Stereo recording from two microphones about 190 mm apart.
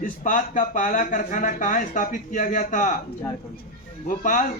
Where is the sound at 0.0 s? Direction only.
45° left (ahead or behind).